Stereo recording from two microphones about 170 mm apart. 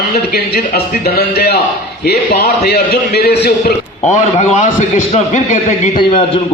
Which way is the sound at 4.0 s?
45° left (ahead or behind).